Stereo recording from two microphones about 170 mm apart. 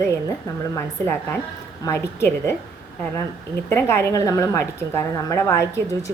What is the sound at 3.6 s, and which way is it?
A woman's voice, 15° left (ahead or behind).